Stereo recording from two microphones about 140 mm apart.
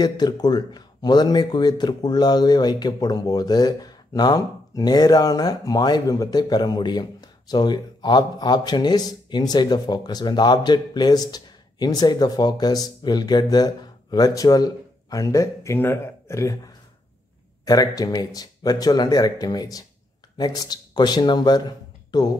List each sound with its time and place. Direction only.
0.0 s a man's voice: 30° left (ahead or behind)